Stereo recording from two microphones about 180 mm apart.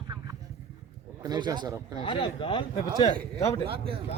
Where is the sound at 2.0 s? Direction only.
25° left (ahead or behind).